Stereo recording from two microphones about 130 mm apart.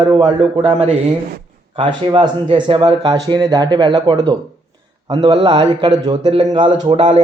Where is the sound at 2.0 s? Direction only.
40° right (ahead or behind).